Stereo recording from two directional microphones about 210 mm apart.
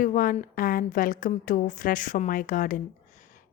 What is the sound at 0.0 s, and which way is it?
A woman's voice, 40° left (ahead or behind).